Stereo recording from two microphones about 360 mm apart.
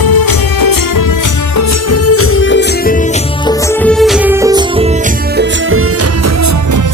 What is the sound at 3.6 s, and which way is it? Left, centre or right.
Music, centre.